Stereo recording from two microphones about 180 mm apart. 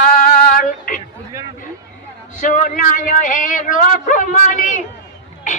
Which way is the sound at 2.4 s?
45° left (ahead or behind).